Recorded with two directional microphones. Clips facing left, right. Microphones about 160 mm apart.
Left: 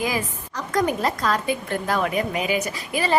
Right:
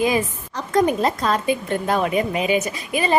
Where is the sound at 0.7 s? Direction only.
25° right (ahead or behind).